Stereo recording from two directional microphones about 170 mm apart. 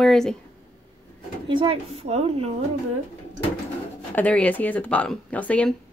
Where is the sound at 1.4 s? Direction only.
30° right (ahead or behind).